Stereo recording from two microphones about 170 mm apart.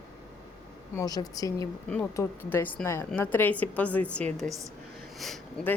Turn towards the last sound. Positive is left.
turn(degrees=0)  # may be behind; listen again after turning